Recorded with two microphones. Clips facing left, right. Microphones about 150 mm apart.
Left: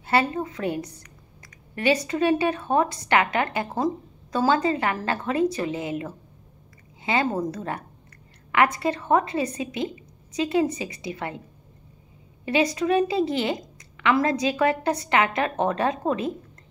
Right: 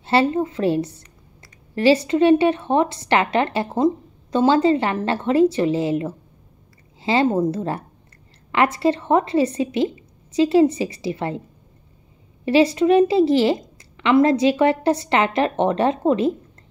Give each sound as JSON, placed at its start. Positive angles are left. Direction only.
{"t": 0.0, "sound": "a woman's voice", "side_deg": -30}
{"t": 12.4, "sound": "a woman's voice", "side_deg": -30}